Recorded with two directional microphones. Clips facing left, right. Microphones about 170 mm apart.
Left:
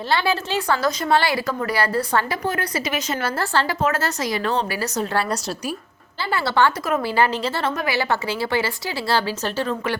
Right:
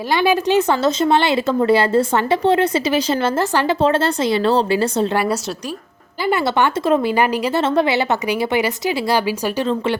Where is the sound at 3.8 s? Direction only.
30° right (ahead or behind).